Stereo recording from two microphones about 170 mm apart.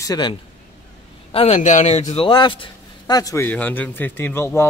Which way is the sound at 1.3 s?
40° left (ahead or behind).